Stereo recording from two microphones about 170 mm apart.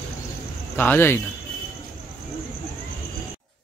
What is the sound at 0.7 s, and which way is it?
Speech, 10° left (ahead or behind).